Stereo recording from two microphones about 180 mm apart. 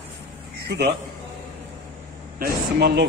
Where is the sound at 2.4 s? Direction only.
65° right (ahead or behind).